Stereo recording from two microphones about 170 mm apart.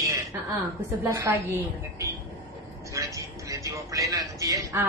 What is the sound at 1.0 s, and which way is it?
A woman's voice, 15° right (ahead or behind).